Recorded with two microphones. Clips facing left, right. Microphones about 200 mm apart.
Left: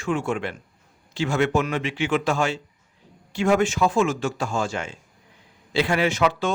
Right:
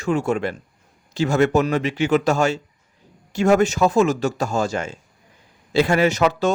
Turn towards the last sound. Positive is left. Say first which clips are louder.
# right 4 dB
turn(degrees=-40)  # may be behind; listen again after turning